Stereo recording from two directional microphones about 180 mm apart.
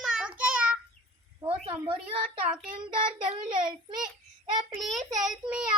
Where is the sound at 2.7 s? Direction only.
25° right (ahead or behind).